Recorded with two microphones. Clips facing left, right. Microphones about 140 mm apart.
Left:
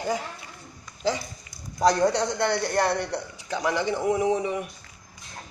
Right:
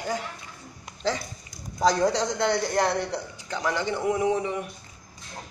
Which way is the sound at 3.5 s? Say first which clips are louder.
Left 2 dB; 15° left (ahead or behind).